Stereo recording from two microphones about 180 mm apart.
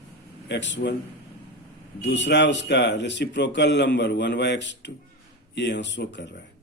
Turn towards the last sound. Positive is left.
turn(degrees=70)  # may be behind; listen again after turning